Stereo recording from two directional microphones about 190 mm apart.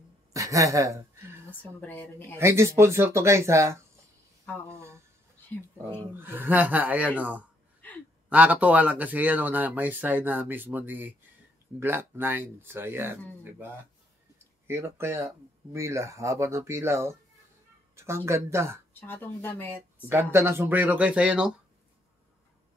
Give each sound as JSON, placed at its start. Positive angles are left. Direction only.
{"t": 0.3, "sound": "a man's voice", "side_deg": -15}
{"t": 1.5, "sound": "speech", "side_deg": 10}
{"t": 2.3, "sound": "speech", "side_deg": -15}
{"t": 6.1, "sound": "speech", "side_deg": -10}
{"t": 7.8, "sound": "gasp", "side_deg": 10}
{"t": 8.3, "sound": "speech", "side_deg": -10}
{"t": 14.7, "sound": "speech", "side_deg": -15}
{"t": 18.9, "sound": "speech", "side_deg": 10}
{"t": 20.1, "sound": "speech", "side_deg": -10}